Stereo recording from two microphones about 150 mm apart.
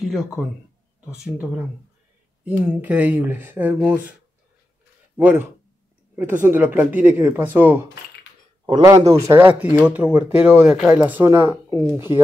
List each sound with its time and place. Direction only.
0.0 s speech: centre (ahead or behind)
5.1 s speech: 10° right (ahead or behind)
6.4 s speech: 10° right (ahead or behind)
8.8 s speech: 20° right (ahead or behind)